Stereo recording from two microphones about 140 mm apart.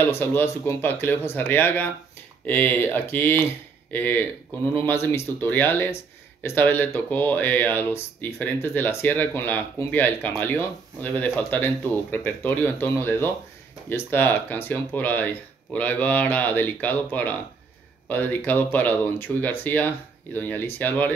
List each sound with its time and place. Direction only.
0.0 s speech: 15° left (ahead or behind)